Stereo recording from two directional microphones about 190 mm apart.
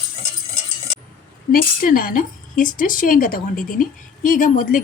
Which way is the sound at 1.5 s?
45° left (ahead or behind).